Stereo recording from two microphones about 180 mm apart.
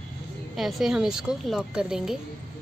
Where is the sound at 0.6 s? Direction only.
Centre (ahead or behind).